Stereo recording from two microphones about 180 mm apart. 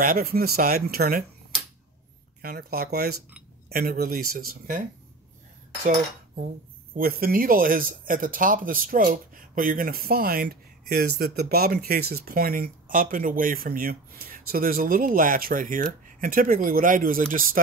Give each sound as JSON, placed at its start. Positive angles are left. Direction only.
{"t": 0.0, "sound": "speech", "side_deg": -55}
{"t": 2.4, "sound": "speech", "side_deg": -55}
{"t": 5.9, "sound": "cutlery", "side_deg": -45}
{"t": 7.0, "sound": "speech", "side_deg": -55}